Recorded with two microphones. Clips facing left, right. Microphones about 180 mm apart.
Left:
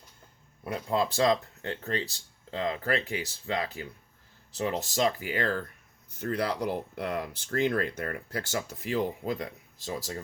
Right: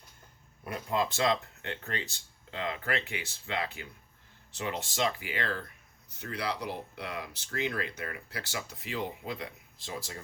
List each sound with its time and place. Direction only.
0.6 s speech: 30° left (ahead or behind)